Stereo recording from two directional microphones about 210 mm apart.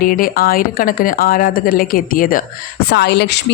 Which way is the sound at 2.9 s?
50° left (ahead or behind).